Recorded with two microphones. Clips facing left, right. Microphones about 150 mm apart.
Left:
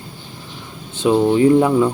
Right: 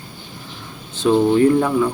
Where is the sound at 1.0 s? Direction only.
15° left (ahead or behind).